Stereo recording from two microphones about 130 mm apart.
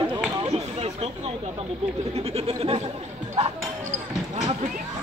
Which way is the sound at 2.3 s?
50° right (ahead or behind).